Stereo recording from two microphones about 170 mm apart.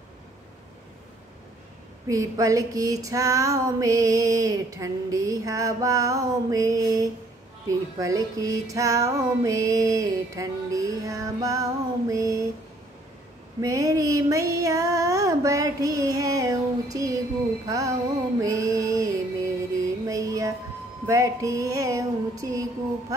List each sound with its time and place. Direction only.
2.0 s female singing: 20° right (ahead or behind)
13.6 s female singing: 20° right (ahead or behind)
18.4 s music: 20° right (ahead or behind)
21.1 s female singing: 20° right (ahead or behind)